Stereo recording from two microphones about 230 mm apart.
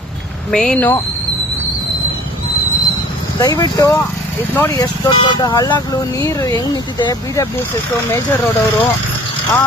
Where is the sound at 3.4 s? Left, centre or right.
Centre.